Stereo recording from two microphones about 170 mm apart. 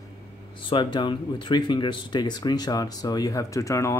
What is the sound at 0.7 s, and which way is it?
Speech, 25° left (ahead or behind).